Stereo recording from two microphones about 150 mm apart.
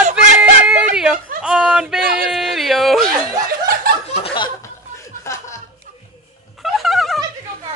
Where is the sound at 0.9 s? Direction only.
5° right (ahead or behind).